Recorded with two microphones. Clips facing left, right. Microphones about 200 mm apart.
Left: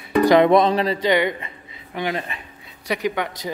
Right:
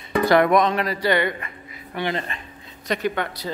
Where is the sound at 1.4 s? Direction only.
25° left (ahead or behind).